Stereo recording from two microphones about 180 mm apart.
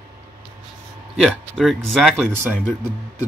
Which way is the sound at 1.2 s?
Centre (ahead or behind).